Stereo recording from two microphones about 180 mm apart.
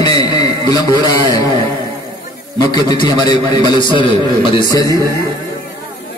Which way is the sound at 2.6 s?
25° left (ahead or behind).